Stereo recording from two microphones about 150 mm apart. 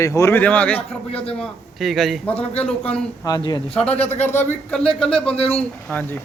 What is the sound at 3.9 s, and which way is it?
Speech, 45° left (ahead or behind).